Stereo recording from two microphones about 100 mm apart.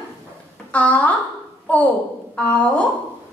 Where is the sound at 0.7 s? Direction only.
15° left (ahead or behind).